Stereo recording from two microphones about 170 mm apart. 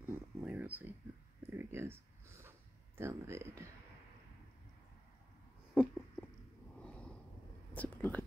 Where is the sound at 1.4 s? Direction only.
15° right (ahead or behind).